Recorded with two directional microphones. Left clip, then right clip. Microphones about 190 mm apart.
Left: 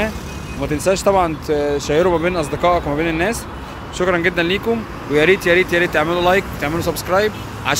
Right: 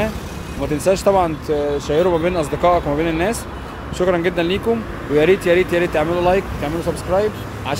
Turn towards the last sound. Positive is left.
turn(degrees=5)  # may be behind; listen again after turning